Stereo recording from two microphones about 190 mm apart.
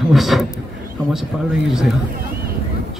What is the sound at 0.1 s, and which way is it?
Speech, centre (ahead or behind).